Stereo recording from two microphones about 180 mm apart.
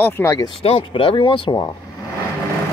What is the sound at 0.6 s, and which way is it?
Speech, 30° left (ahead or behind).